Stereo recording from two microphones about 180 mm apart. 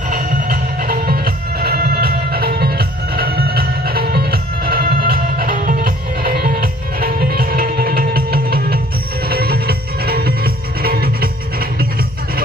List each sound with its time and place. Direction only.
0.1 s music: 50° right (ahead or behind)